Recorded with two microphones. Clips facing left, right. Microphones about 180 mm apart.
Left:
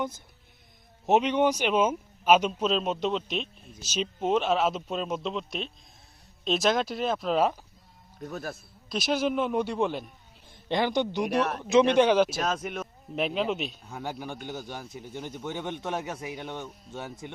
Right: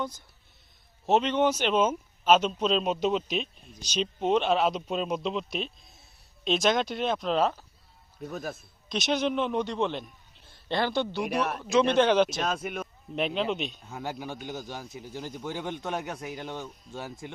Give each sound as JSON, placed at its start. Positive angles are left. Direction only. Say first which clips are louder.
{"t": 1.0, "sound": "a man's voice", "louder": "left 1 dB", "side_deg": 15}
{"t": 11.2, "sound": "speech", "louder": "left 2 dB", "side_deg": -5}
{"t": 11.6, "sound": "speech", "louder": "left 2 dB", "side_deg": 15}